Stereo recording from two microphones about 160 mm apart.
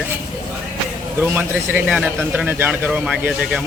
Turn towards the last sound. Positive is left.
turn(degrees=-5)  # may be behind; listen again after turning